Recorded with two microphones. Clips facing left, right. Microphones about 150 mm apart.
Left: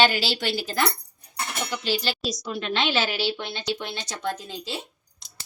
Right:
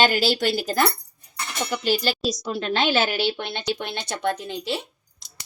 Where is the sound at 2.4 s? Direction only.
35° right (ahead or behind).